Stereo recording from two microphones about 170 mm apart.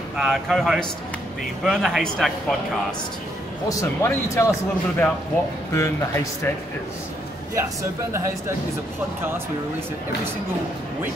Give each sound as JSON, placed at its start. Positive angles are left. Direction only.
{"t": 0.2, "sound": "speech", "side_deg": 0}
{"t": 3.6, "sound": "a man's voice", "side_deg": 20}